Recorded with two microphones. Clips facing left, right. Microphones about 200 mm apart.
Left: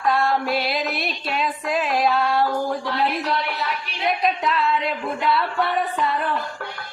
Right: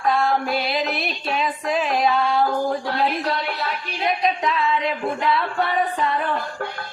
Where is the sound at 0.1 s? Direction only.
Centre (ahead or behind).